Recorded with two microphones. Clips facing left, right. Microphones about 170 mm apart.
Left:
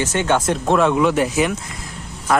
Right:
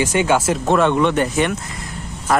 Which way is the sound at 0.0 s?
10° right (ahead or behind).